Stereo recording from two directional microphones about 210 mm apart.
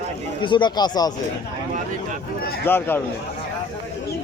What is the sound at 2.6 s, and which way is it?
Speech, 10° left (ahead or behind).